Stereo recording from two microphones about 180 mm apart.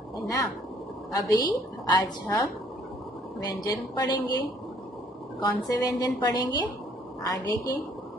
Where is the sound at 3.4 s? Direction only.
20° left (ahead or behind).